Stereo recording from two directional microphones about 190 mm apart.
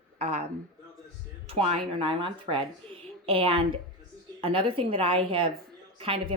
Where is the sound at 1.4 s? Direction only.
30° right (ahead or behind).